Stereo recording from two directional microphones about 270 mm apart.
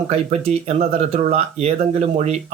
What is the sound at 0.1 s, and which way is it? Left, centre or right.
Speech, right.